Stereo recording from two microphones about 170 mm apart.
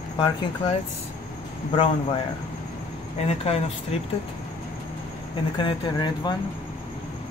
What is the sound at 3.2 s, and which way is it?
Speech, 35° left (ahead or behind).